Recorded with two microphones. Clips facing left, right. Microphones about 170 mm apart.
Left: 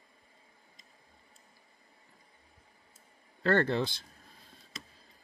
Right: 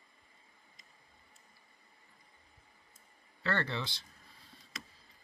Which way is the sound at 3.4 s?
50° left (ahead or behind).